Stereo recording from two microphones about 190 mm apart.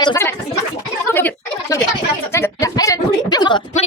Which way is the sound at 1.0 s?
10° left (ahead or behind).